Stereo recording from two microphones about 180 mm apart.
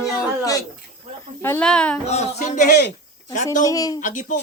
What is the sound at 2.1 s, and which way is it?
Speech, 35° left (ahead or behind).